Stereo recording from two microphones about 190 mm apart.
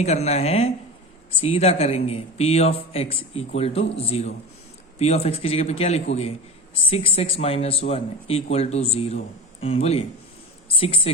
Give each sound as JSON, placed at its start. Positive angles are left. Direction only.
{"t": 0.0, "sound": "a woman's voice", "side_deg": 35}